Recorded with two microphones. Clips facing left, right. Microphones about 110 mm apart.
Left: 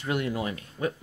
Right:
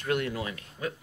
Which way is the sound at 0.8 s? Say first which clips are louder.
Left 5 dB; 30° left (ahead or behind).